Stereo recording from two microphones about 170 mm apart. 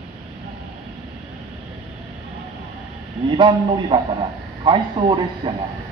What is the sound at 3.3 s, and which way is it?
Speech, 25° right (ahead or behind).